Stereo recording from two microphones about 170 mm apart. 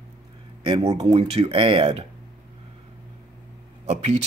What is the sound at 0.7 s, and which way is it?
Speech, 35° right (ahead or behind).